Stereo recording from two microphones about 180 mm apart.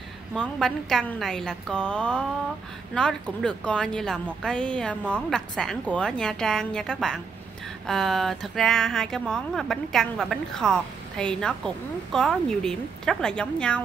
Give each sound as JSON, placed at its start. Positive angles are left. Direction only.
{"t": 0.3, "sound": "speech", "side_deg": 0}